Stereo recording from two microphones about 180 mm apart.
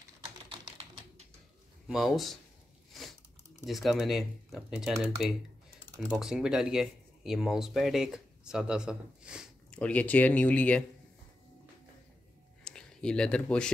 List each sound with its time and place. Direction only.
0.5 s typing: 30° right (ahead or behind)
1.9 s speech: centre (ahead or behind)
2.9 s chewing: centre (ahead or behind)
3.6 s speech: centre (ahead or behind)
6.1 s speech: 5° right (ahead or behind)
9.7 s speech: 5° left (ahead or behind)
12.6 s speech: 5° left (ahead or behind)